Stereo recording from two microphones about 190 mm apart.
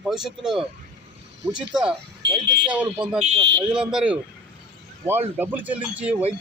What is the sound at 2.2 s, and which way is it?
Speech, 65° right (ahead or behind).